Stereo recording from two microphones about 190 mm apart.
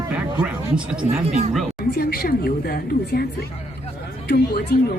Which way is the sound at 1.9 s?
55° left (ahead or behind).